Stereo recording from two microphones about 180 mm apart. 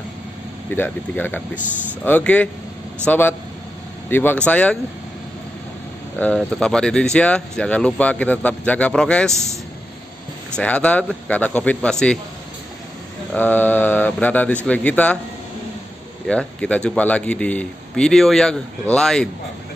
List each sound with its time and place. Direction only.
0.7 s speech: 10° left (ahead or behind)
6.1 s speech: 5° left (ahead or behind)
10.5 s speech: 5° left (ahead or behind)
13.3 s speech: 10° left (ahead or behind)
16.3 s speech: 5° left (ahead or behind)